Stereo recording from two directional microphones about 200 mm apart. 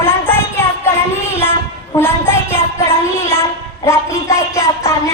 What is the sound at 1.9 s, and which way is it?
Speech, 10° left (ahead or behind).